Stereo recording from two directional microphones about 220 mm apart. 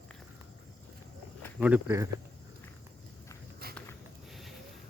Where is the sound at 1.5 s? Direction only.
5° right (ahead or behind).